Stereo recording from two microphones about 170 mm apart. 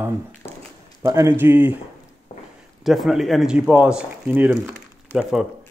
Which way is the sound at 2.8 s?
Centre (ahead or behind).